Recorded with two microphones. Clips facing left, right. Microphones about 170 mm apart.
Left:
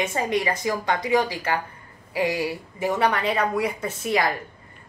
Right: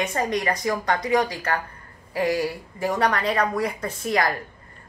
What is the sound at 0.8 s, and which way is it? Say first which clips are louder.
Speech: even; 25° left (ahead or behind).